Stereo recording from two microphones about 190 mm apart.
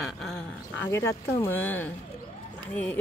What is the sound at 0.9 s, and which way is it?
Speech, 15° left (ahead or behind).